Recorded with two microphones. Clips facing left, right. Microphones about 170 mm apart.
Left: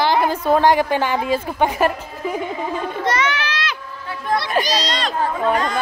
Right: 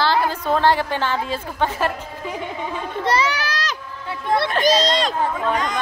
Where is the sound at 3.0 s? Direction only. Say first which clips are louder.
Right 2 dB; 30° right (ahead or behind).